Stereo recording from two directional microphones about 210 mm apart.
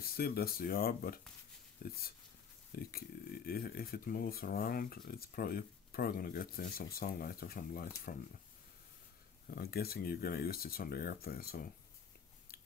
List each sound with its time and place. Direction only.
0.0 s speech: 45° left (ahead or behind)
9.5 s speech: 45° left (ahead or behind)
12.5 s biting: 45° left (ahead or behind)